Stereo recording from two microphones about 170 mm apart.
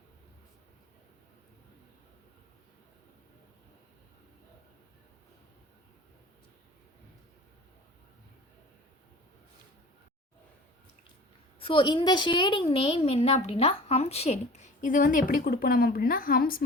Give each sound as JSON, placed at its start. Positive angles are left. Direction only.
{"t": 11.6, "sound": "a woman's voice", "side_deg": 30}